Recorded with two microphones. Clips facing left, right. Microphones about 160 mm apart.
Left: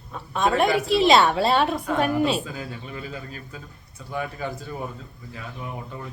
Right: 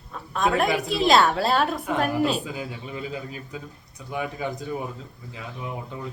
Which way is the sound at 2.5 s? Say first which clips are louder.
Right 1 dB; 15° right (ahead or behind).